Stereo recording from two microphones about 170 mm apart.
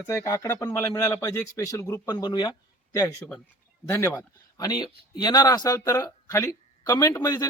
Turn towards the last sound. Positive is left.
turn(degrees=20)  # may be behind; listen again after turning